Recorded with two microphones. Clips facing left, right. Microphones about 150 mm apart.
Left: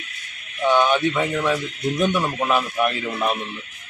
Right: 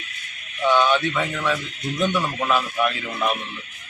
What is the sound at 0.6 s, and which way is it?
A man's voice, 15° left (ahead or behind).